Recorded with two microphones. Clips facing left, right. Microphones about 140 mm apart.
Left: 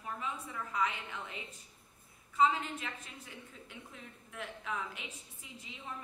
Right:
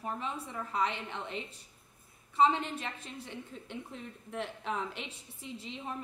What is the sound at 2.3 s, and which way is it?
Speech, 30° right (ahead or behind).